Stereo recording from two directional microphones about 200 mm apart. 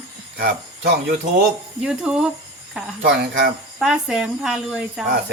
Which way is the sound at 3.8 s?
5° right (ahead or behind).